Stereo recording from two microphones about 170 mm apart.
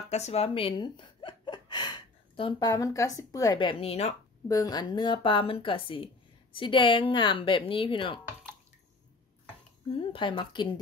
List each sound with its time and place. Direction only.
0.1 s speech: 40° left (ahead or behind)
4.5 s a woman's voice: 20° left (ahead or behind)
9.9 s a woman's voice: 30° left (ahead or behind)